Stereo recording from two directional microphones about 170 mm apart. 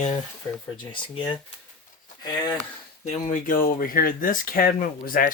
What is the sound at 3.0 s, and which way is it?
Speech, 45° left (ahead or behind).